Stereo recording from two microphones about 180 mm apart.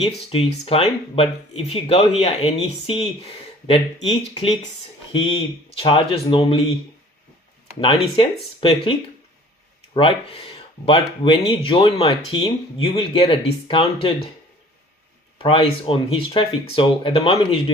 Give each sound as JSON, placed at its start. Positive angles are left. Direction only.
{"t": 0.0, "sound": "speech", "side_deg": 30}
{"t": 5.7, "sound": "speech", "side_deg": 30}
{"t": 7.8, "sound": "speech", "side_deg": 30}
{"t": 15.4, "sound": "speech", "side_deg": 30}